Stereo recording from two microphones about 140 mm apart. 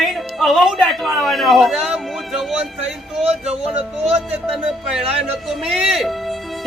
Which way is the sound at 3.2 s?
50° right (ahead or behind).